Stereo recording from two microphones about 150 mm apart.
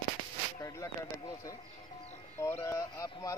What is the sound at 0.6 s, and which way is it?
A man's voice, 20° left (ahead or behind).